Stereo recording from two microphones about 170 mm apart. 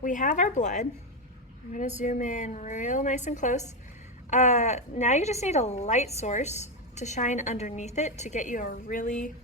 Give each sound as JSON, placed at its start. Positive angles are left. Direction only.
{"t": 0.0, "sound": "speech", "side_deg": 50}
{"t": 2.0, "sound": "speech", "side_deg": 45}